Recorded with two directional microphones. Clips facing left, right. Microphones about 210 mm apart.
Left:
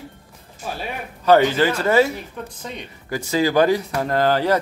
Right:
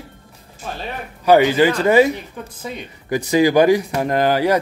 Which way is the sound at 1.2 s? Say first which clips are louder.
Right 2 dB; 10° right (ahead or behind).